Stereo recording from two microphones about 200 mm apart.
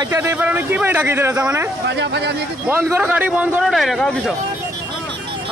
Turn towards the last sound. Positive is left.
turn(degrees=0)  # may be behind; listen again after turning